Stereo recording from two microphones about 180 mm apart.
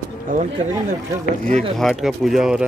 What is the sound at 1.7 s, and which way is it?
Speech, centre (ahead or behind).